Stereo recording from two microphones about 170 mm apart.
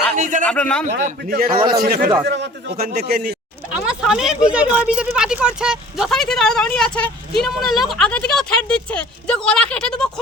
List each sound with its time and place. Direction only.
0.2 s a sound: 50° right (ahead or behind)
0.4 s a man's voice: 5° left (ahead or behind)
0.9 s a man's voice: 55° right (ahead or behind)
3.7 s speech: 5° right (ahead or behind)